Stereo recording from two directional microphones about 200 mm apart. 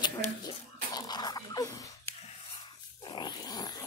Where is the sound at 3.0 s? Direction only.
20° left (ahead or behind).